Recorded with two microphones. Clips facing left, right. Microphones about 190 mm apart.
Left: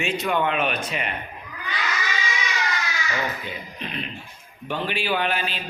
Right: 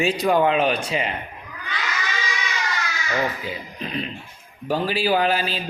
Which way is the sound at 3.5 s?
35° right (ahead or behind).